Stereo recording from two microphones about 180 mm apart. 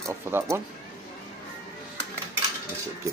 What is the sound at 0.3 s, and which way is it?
Speech, 15° right (ahead or behind).